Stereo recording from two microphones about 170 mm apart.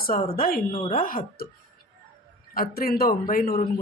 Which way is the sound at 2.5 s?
60° left (ahead or behind).